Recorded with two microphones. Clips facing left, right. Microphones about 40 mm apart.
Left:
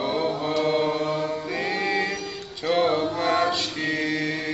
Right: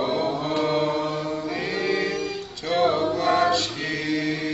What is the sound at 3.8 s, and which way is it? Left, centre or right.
Mantra, left.